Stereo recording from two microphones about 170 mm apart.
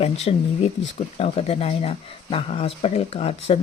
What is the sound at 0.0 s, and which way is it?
Speech, 35° left (ahead or behind).